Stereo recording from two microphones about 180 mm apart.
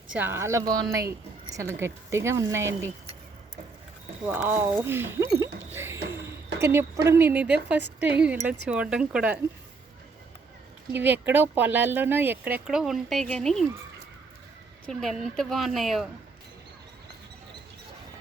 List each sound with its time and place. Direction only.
0.1 s speech: 10° right (ahead or behind)
4.3 s speech: 10° right (ahead or behind)
5.4 s music: 15° right (ahead or behind)
6.6 s speech: 15° right (ahead or behind)
10.9 s speech: 10° right (ahead or behind)
14.8 s speech: centre (ahead or behind)